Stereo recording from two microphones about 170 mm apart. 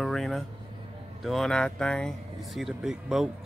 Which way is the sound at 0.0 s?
Centre (ahead or behind).